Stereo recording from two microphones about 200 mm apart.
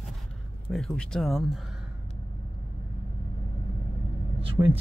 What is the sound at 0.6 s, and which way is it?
Speech, centre (ahead or behind).